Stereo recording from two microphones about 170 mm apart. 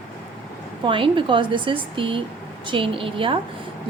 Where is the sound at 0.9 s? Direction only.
30° right (ahead or behind).